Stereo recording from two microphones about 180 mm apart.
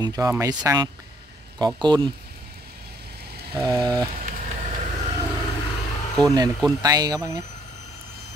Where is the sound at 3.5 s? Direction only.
20° right (ahead or behind).